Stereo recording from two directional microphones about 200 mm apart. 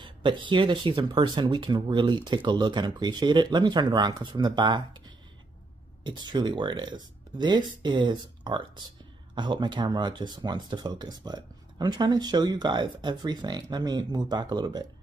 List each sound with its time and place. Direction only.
0.0 s speech: 25° right (ahead or behind)